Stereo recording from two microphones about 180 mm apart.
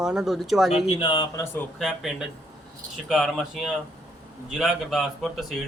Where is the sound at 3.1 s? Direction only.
Centre (ahead or behind).